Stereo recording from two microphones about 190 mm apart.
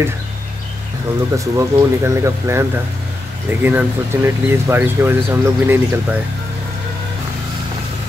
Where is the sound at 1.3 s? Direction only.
15° right (ahead or behind).